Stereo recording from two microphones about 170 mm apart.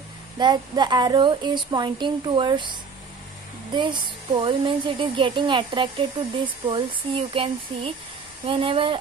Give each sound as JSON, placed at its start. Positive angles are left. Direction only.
{"t": 0.4, "sound": "speech", "side_deg": -25}